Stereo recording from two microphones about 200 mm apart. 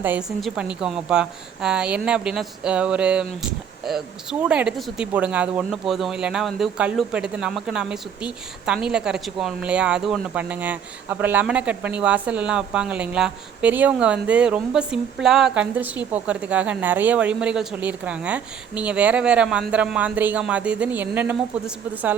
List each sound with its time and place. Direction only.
0.0 s a woman's voice: 5° right (ahead or behind)